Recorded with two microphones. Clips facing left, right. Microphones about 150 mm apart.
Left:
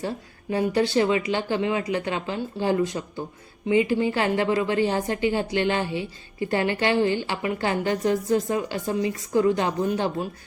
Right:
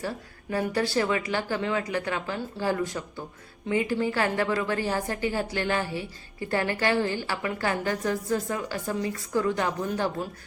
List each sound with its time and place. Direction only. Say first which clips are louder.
0.5 s a woman's voice: left 4 dB; 20° left (ahead or behind)